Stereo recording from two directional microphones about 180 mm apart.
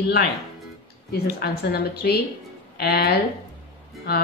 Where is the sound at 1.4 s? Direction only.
60° left (ahead or behind).